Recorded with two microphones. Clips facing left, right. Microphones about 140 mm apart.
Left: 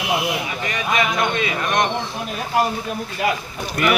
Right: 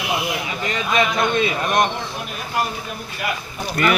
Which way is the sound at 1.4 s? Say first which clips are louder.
Right 2 dB; 30° right (ahead or behind).